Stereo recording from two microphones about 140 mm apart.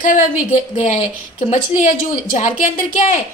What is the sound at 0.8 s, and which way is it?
A woman's voice, 60° left (ahead or behind).